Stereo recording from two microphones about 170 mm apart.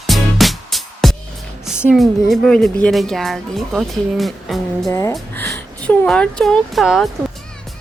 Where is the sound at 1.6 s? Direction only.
5° right (ahead or behind).